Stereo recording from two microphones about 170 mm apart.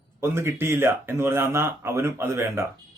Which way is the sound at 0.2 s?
15° right (ahead or behind).